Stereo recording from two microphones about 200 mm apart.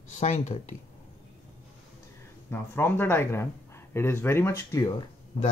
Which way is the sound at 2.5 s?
10° left (ahead or behind).